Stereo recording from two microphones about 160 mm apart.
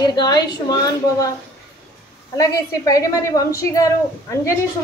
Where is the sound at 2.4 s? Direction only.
20° left (ahead or behind).